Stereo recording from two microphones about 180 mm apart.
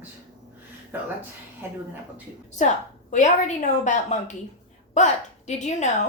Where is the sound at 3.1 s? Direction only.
40° left (ahead or behind).